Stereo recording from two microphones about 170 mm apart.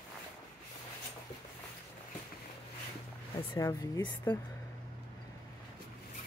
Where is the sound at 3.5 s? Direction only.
20° left (ahead or behind).